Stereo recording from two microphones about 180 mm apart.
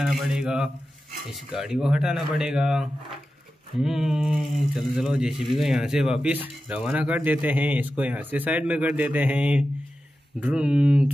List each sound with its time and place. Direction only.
0.0 s speech: centre (ahead or behind)